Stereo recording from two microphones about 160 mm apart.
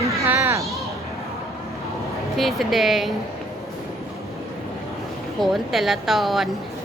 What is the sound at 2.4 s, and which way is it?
Speech, centre (ahead or behind).